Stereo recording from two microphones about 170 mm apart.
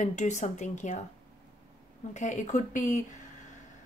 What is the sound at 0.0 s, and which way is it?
A woman's voice, 45° left (ahead or behind).